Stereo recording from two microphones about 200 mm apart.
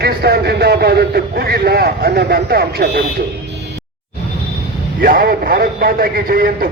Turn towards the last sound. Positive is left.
turn(degrees=-45)  # may be behind; listen again after turning